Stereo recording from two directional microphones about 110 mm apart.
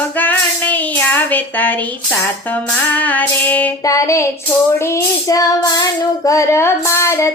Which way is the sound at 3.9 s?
30° left (ahead or behind).